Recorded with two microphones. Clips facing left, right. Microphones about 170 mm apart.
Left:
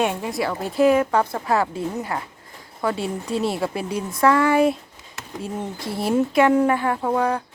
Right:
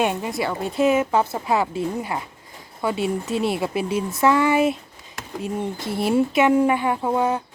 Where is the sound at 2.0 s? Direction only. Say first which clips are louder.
Even; 15° right (ahead or behind).